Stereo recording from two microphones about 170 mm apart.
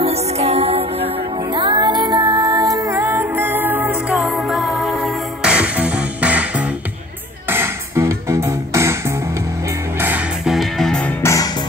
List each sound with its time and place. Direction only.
0.0 s music: 35° right (ahead or behind); by 6.4 s 5° right (ahead or behind)
7.4 s music: 15° right (ahead or behind)
9.9 s music: 10° right (ahead or behind)
11.2 s music: 15° left (ahead or behind)